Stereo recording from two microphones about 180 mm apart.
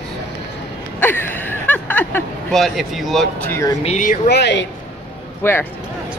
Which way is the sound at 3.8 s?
45° left (ahead or behind).